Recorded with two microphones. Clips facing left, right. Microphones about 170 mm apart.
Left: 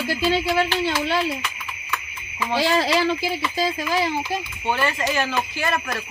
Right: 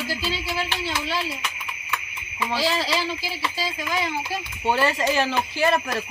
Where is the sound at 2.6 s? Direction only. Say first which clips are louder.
Left 6 dB; 55° left (ahead or behind).